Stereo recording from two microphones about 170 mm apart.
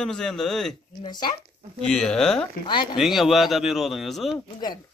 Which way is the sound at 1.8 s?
5° left (ahead or behind).